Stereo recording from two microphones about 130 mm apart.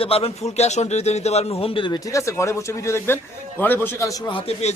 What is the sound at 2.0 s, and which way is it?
A man's voice, 25° left (ahead or behind).